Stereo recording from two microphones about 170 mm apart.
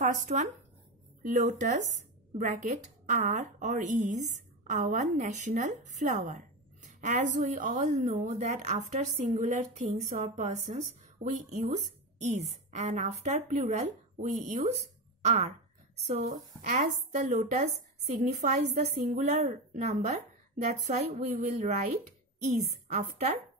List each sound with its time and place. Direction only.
0.0 s a woman's voice: 45° right (ahead or behind)